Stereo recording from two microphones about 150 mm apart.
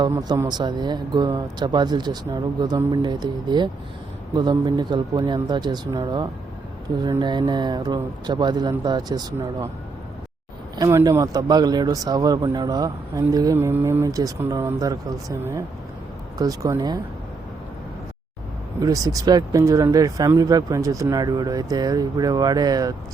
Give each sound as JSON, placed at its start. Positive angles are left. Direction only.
{"t": 0.1, "sound": "speech", "side_deg": -20}
{"t": 10.8, "sound": "speech", "side_deg": -25}
{"t": 18.8, "sound": "speech", "side_deg": -25}